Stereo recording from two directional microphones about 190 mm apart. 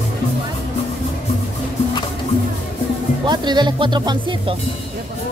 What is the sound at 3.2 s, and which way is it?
Speech, 25° right (ahead or behind).